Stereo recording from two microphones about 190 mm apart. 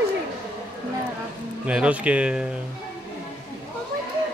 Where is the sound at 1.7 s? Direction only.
5° right (ahead or behind).